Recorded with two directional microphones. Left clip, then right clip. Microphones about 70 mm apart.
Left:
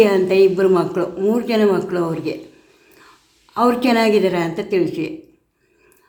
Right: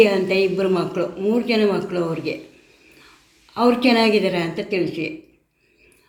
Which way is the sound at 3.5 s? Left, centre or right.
Left.